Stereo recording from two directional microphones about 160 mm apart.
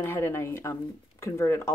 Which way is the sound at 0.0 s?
15° left (ahead or behind).